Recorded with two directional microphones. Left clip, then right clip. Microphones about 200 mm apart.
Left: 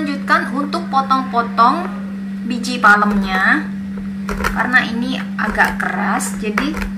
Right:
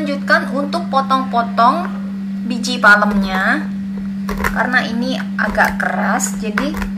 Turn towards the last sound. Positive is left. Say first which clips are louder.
# right 1 dB
turn(degrees=-25)  # may be behind; listen again after turning